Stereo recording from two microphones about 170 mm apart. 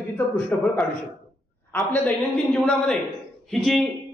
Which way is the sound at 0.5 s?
10° left (ahead or behind).